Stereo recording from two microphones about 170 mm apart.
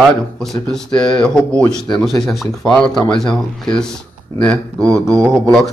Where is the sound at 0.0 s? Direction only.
Centre (ahead or behind).